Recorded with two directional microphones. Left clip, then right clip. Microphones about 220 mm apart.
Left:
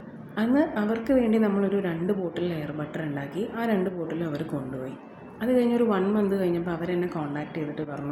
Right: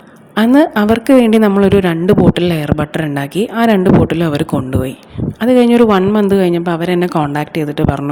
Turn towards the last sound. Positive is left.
turn(degrees=-45)  # may be behind; listen again after turning